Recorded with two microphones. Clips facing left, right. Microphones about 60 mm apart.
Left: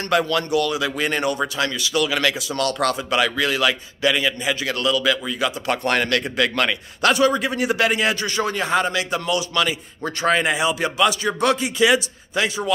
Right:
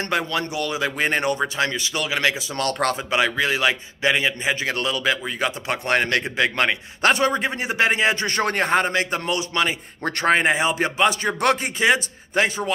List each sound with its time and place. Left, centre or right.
0.1 s speech: right
8.3 s a man's voice: right